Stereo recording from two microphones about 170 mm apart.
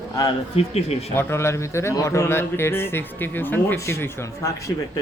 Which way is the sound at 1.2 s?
15° left (ahead or behind).